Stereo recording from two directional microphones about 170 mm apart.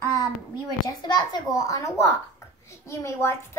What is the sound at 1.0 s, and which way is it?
A child's voice, 25° left (ahead or behind).